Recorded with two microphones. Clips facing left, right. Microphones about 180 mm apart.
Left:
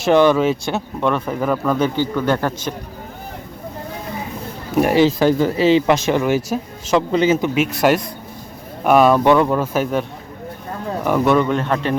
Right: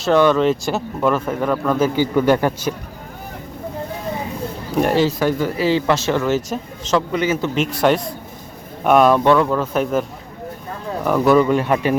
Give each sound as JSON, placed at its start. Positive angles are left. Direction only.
{"t": 0.0, "sound": "speech", "side_deg": 10}
{"t": 2.0, "sound": "speech", "side_deg": -10}
{"t": 4.7, "sound": "speech", "side_deg": 5}
{"t": 5.0, "sound": "speech", "side_deg": 25}
{"t": 7.1, "sound": "speech", "side_deg": 25}
{"t": 7.4, "sound": "speech", "side_deg": 10}
{"t": 9.2, "sound": "speech", "side_deg": 15}
{"t": 9.7, "sound": "speech", "side_deg": 0}